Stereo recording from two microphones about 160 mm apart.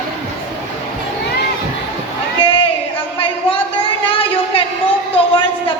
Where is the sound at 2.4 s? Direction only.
35° left (ahead or behind).